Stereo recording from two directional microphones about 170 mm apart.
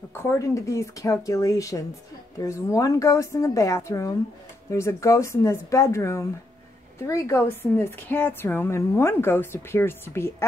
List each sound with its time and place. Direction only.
0.1 s a woman's voice: 15° left (ahead or behind)